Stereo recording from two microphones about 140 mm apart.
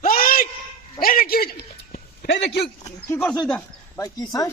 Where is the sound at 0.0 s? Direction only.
90° left.